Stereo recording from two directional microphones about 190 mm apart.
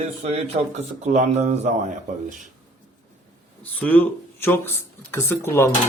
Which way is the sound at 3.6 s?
10° left (ahead or behind).